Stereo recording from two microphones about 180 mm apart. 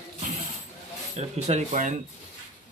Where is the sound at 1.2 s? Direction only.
40° right (ahead or behind).